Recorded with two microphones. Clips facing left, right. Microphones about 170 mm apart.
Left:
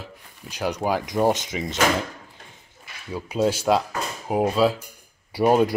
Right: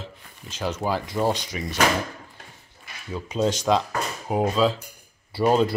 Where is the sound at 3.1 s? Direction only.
10° left (ahead or behind).